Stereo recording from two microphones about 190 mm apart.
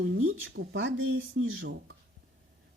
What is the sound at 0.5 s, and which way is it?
Speech, 70° right (ahead or behind).